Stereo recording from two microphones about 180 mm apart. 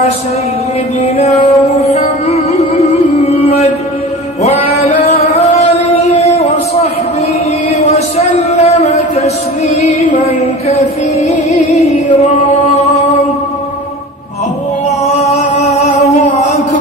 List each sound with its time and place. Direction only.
1.1 s music: 35° left (ahead or behind)
4.4 s male singing: 35° left (ahead or behind)
7.9 s music: 40° left (ahead or behind)
15.0 s music: 35° left (ahead or behind)
16.3 s a sound: 40° left (ahead or behind)